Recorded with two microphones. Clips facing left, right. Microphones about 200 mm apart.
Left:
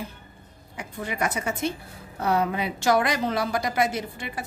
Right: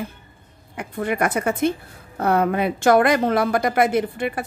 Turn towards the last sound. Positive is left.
turn(degrees=-55)  # may be behind; listen again after turning